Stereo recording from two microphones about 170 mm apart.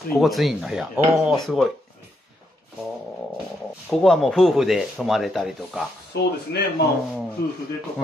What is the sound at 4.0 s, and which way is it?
Speech, centre (ahead or behind).